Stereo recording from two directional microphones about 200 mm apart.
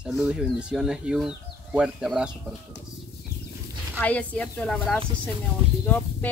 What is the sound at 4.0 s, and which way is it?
Speech, 5° left (ahead or behind).